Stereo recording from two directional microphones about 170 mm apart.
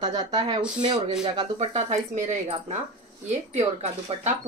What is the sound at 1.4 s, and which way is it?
Speech, 40° right (ahead or behind).